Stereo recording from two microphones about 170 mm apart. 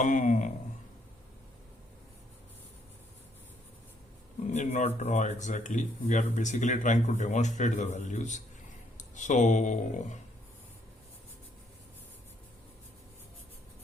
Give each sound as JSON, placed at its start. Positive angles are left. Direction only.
{"t": 0.0, "sound": "speech", "side_deg": 50}
{"t": 4.4, "sound": "speech", "side_deg": 45}